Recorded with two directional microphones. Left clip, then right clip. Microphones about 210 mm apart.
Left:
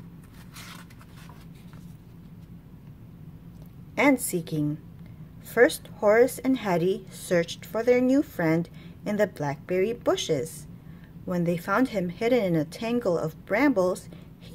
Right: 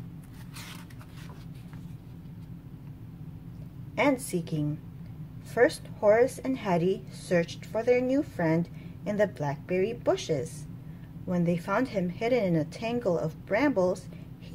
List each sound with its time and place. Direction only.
3.9 s a woman's voice: 25° left (ahead or behind)